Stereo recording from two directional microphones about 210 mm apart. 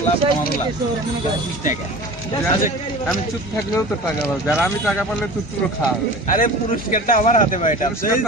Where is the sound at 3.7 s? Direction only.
10° left (ahead or behind).